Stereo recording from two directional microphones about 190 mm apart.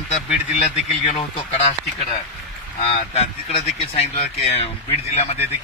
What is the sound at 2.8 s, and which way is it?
Speech, 35° left (ahead or behind).